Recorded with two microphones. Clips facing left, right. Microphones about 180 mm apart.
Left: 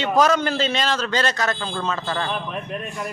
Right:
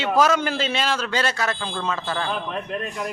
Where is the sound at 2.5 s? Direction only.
5° left (ahead or behind).